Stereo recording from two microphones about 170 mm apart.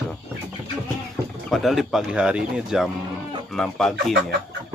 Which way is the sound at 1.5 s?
Centre (ahead or behind).